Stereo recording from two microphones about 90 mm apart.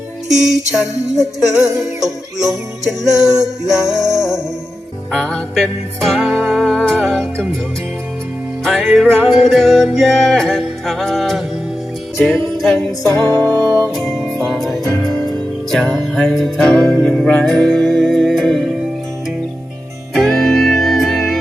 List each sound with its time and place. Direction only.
0.3 s music: 5° right (ahead or behind)
5.1 s music: 15° left (ahead or behind)
5.5 s music: centre (ahead or behind)
8.6 s music: centre (ahead or behind)
12.5 s music: 5° left (ahead or behind)
13.3 s music: 35° right (ahead or behind)
13.9 s music: centre (ahead or behind)
16.1 s music: 5° left (ahead or behind)
20.1 s music: 5° left (ahead or behind)